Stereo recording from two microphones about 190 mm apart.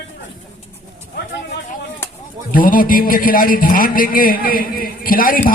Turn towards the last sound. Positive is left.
turn(degrees=50)  # may be behind; listen again after turning